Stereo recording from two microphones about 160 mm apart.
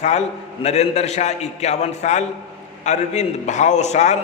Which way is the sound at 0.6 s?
45° left (ahead or behind).